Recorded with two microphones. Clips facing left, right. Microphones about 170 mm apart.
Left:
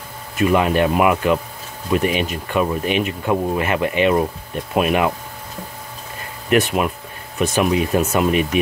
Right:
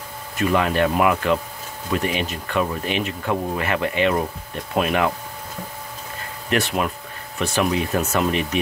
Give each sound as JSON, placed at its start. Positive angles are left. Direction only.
{"t": 0.4, "sound": "speech", "side_deg": 15}
{"t": 6.5, "sound": "speech", "side_deg": 15}